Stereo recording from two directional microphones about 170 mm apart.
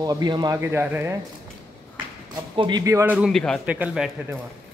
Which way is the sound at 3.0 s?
10° right (ahead or behind).